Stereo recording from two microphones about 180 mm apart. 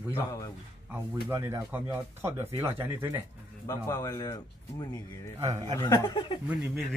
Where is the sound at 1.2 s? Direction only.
15° right (ahead or behind).